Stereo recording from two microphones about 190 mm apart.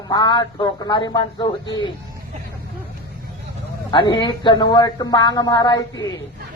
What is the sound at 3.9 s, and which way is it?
Speech, 25° left (ahead or behind).